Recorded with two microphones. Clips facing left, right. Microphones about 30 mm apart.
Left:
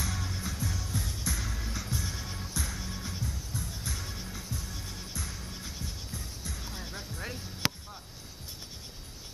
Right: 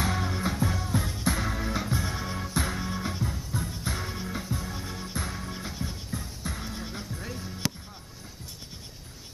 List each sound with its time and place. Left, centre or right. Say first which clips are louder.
0.0 s music: right 8 dB; right
2.5 s music: right 8 dB; right
4.7 s music: right 6 dB; centre
5.1 s music: right 7 dB; right
5.5 s music: right 6 dB; right
6.1 s music: right 6 dB; right
6.7 s music: right 4 dB; centre
7.6 s a sound: left 1 dB; left